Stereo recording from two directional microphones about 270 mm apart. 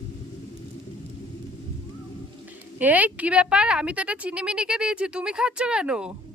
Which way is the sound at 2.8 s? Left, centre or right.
Centre.